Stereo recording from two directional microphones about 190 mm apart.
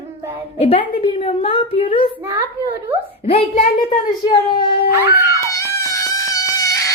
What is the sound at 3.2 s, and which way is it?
A woman's voice, 30° left (ahead or behind).